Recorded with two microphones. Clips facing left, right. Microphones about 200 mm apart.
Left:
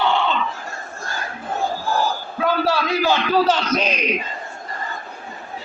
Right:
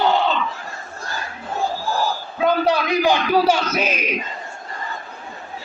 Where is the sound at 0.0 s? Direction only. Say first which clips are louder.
Right 2 dB; 40° right (ahead or behind).